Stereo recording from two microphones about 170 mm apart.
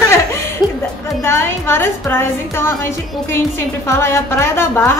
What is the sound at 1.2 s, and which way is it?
Speech, 15° left (ahead or behind).